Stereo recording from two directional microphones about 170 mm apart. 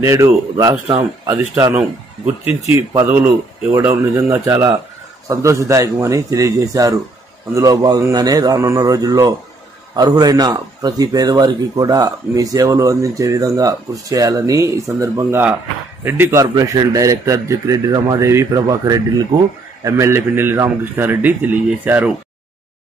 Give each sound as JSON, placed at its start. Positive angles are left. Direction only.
{"t": 0.0, "sound": "a man's voice", "side_deg": -20}